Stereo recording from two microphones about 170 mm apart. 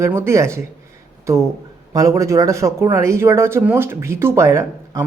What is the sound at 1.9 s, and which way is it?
Speech, 20° right (ahead or behind).